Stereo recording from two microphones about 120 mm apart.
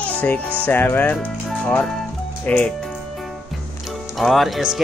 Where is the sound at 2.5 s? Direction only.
10° left (ahead or behind).